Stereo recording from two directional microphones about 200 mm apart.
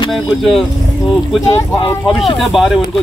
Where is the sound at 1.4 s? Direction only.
15° left (ahead or behind).